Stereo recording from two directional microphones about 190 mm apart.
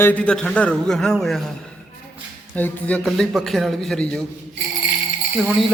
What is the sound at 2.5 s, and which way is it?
A man's voice, 10° left (ahead or behind).